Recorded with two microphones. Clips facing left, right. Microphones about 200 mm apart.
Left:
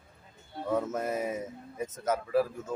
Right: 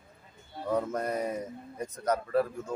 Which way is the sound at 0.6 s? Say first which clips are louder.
Even; centre (ahead or behind).